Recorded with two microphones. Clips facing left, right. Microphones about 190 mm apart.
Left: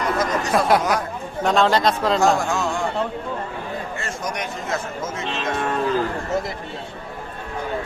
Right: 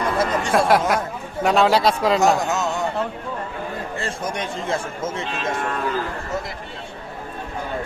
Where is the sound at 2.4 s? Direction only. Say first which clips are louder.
Even; 20° right (ahead or behind).